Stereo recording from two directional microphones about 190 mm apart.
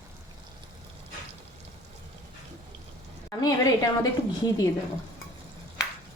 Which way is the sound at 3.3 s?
20° left (ahead or behind).